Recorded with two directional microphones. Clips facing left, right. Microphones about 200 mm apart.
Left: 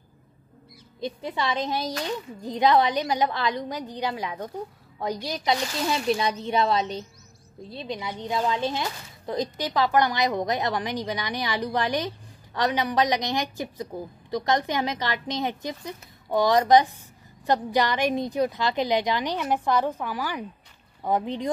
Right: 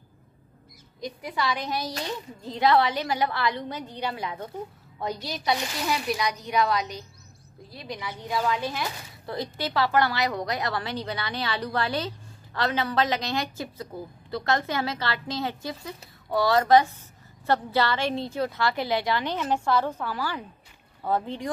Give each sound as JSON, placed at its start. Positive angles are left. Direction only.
{"t": 1.0, "sound": "a woman's voice", "side_deg": 25}